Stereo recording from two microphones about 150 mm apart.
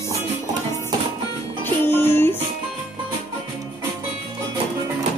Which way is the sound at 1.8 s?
15° left (ahead or behind).